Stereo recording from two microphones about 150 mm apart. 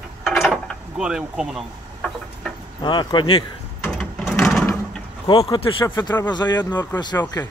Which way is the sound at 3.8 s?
5° left (ahead or behind).